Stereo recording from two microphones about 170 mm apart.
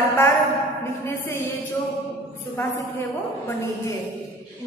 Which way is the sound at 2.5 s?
15° left (ahead or behind).